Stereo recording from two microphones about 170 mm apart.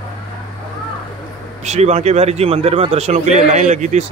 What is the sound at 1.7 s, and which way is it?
A man's voice, 40° right (ahead or behind).